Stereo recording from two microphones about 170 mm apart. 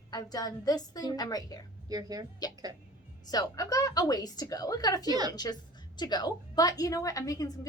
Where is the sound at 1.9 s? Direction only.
20° right (ahead or behind).